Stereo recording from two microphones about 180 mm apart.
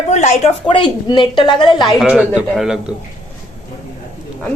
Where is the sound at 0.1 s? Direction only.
40° left (ahead or behind).